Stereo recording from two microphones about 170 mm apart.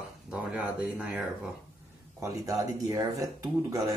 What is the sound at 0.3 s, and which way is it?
Speech, 5° right (ahead or behind).